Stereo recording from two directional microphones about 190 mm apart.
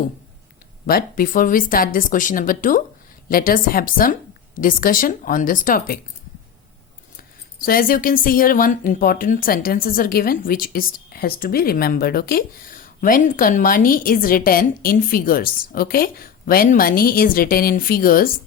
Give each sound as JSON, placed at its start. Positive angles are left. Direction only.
{"t": 0.9, "sound": "speech", "side_deg": 50}
{"t": 7.6, "sound": "speech", "side_deg": 50}